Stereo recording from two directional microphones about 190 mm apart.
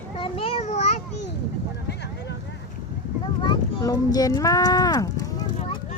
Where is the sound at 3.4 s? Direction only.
20° left (ahead or behind).